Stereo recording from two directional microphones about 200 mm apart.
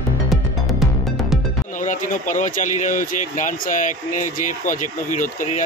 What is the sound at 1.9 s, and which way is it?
Speech, 40° left (ahead or behind).